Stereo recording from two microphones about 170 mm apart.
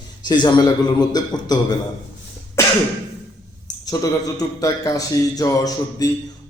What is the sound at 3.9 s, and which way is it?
A man's voice, 20° left (ahead or behind).